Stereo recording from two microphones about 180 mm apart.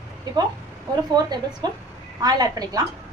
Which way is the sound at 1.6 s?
25° right (ahead or behind).